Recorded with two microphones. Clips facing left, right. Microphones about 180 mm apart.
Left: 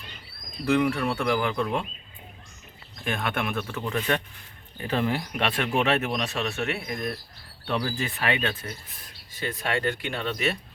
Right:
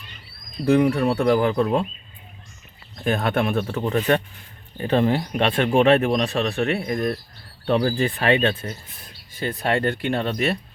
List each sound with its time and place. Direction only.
0.6 s speech: 40° right (ahead or behind)
3.0 s speech: 40° right (ahead or behind)
9.9 s speech: 50° right (ahead or behind)